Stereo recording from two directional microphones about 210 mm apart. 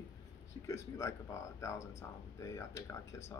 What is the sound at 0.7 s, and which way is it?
Speech, 15° left (ahead or behind).